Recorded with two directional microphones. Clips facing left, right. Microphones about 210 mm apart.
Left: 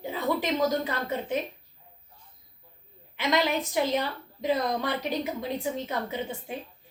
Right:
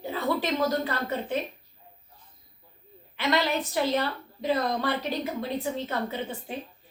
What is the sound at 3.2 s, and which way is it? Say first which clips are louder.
A woman's voice: even; 15° left (ahead or behind).